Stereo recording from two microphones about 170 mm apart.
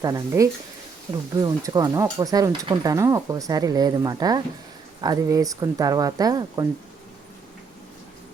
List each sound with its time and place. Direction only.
0.0 s speech: 20° right (ahead or behind)